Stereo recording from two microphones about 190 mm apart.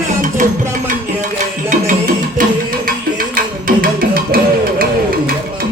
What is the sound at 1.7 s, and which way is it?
Music, 45° right (ahead or behind).